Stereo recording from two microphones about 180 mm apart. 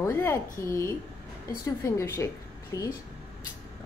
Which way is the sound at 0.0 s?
15° left (ahead or behind).